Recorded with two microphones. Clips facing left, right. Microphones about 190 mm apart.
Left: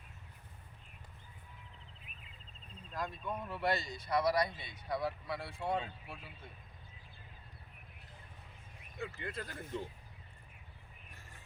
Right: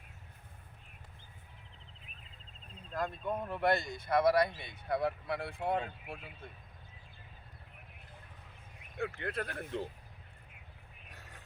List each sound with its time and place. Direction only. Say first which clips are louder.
2.9 s speech: right 4 dB; 50° right (ahead or behind)
9.0 s speech: right 5 dB; 60° right (ahead or behind)
11.1 s music: right 5 dB; 70° right (ahead or behind)